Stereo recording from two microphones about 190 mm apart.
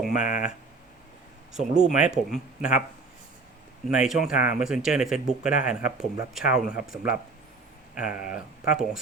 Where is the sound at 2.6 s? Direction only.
45° left (ahead or behind).